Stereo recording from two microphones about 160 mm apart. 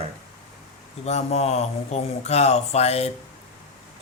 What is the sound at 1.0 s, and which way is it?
Speech, 45° left (ahead or behind).